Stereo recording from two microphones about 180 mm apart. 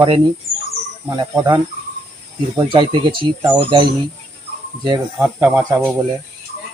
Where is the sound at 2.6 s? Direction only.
25° right (ahead or behind).